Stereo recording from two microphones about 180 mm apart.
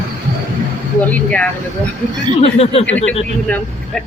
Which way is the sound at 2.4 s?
35° left (ahead or behind).